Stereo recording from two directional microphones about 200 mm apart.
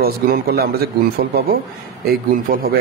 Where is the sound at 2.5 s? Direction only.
45° right (ahead or behind).